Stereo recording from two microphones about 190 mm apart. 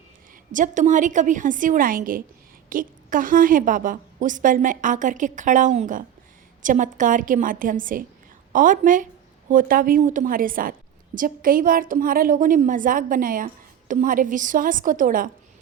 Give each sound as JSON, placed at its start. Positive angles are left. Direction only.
{"t": 0.5, "sound": "a woman's voice", "side_deg": -40}